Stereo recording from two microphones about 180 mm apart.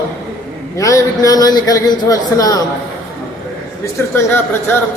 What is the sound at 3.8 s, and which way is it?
Speech, 15° left (ahead or behind).